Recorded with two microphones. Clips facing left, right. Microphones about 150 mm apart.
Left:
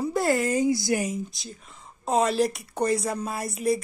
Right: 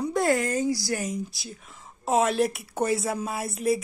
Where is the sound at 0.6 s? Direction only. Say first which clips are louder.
Left 3 dB; 20° left (ahead or behind).